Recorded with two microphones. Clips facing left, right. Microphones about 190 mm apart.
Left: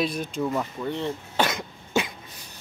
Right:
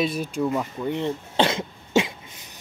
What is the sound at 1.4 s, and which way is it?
Cough, 25° right (ahead or behind).